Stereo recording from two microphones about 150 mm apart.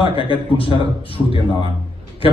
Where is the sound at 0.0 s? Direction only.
35° left (ahead or behind).